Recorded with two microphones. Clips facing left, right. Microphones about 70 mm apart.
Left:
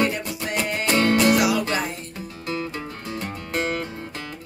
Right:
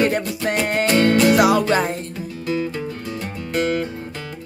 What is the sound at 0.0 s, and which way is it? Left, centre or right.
Music, right.